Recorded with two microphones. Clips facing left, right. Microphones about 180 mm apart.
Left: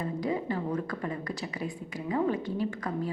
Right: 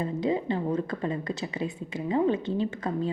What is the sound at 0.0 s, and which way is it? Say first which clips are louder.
Speech: right 4 dB; 25° right (ahead or behind).